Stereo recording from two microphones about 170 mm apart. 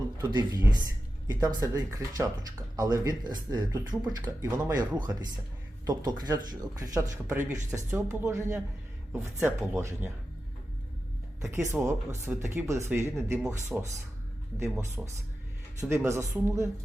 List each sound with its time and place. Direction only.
0.2 s speech: 25° right (ahead or behind)
11.4 s speech: 15° right (ahead or behind)
13.7 s speech: 5° right (ahead or behind)
14.6 s speech: 15° right (ahead or behind)